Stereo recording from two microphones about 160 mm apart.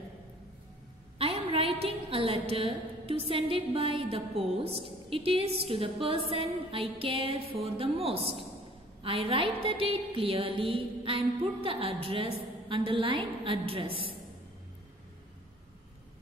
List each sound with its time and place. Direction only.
1.1 s a woman's voice: 35° right (ahead or behind)
5.1 s music: 35° right (ahead or behind)